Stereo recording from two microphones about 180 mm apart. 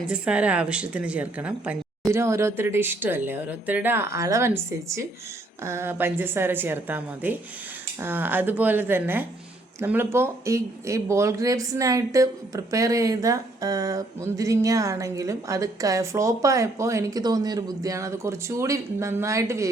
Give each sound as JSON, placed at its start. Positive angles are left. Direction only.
{"t": 0.1, "sound": "speech", "side_deg": -5}